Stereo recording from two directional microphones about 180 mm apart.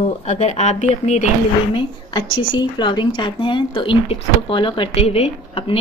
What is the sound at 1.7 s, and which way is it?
Speech, 30° left (ahead or behind).